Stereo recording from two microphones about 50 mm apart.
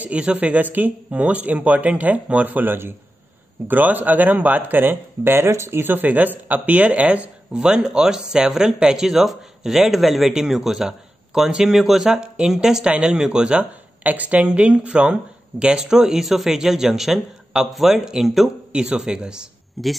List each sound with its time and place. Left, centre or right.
0.0 s speech: right
5.8 s speech: right
7.5 s speech: centre
14.0 s a man's voice: right; by 18.5 s centre
18.7 s speech: centre
19.8 s a man's voice: centre